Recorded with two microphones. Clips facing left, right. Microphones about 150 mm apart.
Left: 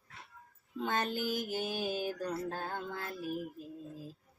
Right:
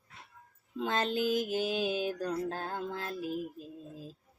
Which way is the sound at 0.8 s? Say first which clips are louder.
Right 2 dB; 90° right.